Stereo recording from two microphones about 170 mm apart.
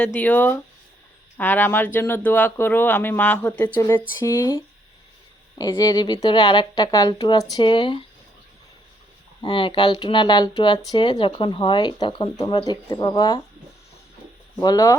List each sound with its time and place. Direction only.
0.0 s speech: 10° left (ahead or behind); by 7.9 s 30° left (ahead or behind)
9.4 s speech: 30° left (ahead or behind)
14.6 s speech: 20° left (ahead or behind)